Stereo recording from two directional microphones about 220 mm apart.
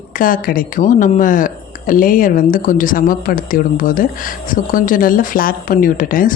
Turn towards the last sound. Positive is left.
turn(degrees=40)  # may be behind; listen again after turning